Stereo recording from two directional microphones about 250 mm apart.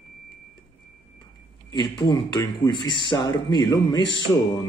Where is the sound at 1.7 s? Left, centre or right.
Centre.